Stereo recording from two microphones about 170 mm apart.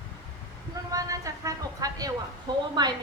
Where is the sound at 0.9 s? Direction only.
20° right (ahead or behind).